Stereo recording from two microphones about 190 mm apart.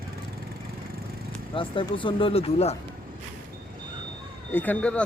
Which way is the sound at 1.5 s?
25° left (ahead or behind).